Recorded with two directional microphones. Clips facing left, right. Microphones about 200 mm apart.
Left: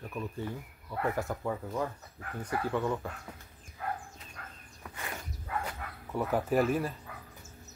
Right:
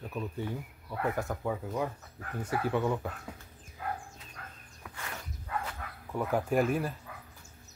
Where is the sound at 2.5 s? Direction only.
15° right (ahead or behind).